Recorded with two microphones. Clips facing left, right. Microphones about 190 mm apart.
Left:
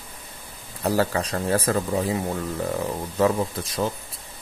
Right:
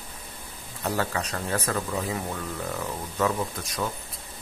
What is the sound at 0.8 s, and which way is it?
Speech, 35° left (ahead or behind).